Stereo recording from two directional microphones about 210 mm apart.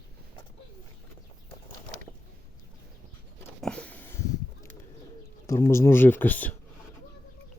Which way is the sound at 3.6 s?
5° left (ahead or behind).